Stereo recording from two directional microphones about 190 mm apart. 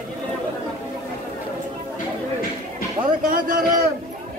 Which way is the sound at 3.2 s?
45° right (ahead or behind).